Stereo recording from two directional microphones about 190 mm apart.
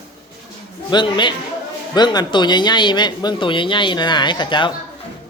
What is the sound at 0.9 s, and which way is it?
Speech, 25° left (ahead or behind).